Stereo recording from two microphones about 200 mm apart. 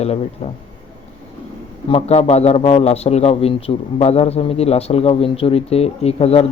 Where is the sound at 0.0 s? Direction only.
30° left (ahead or behind).